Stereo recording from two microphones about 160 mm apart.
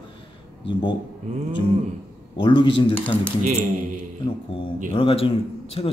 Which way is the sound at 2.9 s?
10° left (ahead or behind).